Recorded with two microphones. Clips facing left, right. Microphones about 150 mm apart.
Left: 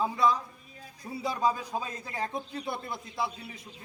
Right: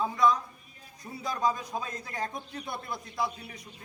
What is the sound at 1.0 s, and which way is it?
Speech, 20° left (ahead or behind).